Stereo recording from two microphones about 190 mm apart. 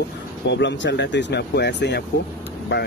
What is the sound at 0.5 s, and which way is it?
Speech, 65° left (ahead or behind).